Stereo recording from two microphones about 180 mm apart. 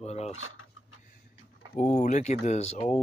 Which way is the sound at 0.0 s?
35° left (ahead or behind).